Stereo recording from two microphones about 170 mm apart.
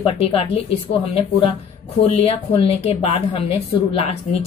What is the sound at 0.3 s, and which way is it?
Speech, 35° left (ahead or behind).